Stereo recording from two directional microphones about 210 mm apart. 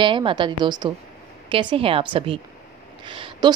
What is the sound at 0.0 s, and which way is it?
Speech, 25° right (ahead or behind).